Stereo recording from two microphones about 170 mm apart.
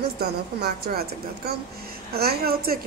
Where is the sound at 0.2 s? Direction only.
65° right (ahead or behind).